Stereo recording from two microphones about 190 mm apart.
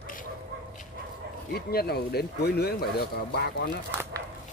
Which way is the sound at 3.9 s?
10° right (ahead or behind).